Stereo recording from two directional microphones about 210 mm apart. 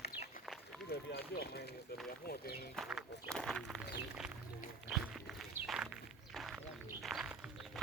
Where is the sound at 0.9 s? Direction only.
50° left (ahead or behind).